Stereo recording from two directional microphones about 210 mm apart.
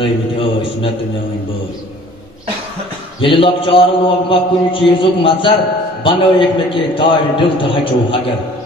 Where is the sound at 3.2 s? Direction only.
25° left (ahead or behind).